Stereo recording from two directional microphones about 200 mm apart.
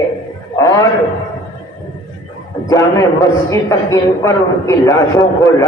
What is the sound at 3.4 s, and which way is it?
A man's voice, 15° left (ahead or behind).